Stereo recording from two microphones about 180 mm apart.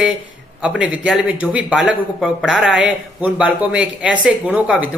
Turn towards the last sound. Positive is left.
turn(degrees=-5)  # may be behind; listen again after turning